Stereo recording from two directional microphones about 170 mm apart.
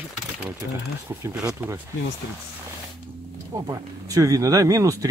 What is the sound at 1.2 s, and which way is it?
Speech, 5° right (ahead or behind).